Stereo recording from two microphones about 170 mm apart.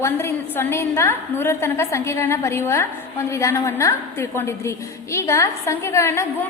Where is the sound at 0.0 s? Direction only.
15° left (ahead or behind).